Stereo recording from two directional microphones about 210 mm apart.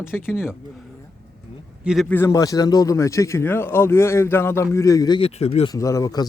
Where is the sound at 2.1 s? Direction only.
15° left (ahead or behind).